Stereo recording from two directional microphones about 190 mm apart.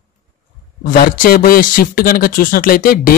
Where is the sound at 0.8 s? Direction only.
50° left (ahead or behind).